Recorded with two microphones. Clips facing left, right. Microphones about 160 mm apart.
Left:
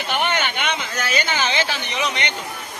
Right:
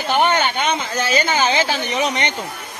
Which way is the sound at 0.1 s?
35° right (ahead or behind).